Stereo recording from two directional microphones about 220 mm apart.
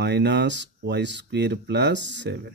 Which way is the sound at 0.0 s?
50° right (ahead or behind).